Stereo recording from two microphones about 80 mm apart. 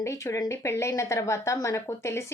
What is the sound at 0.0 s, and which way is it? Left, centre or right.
A woman's voice, left.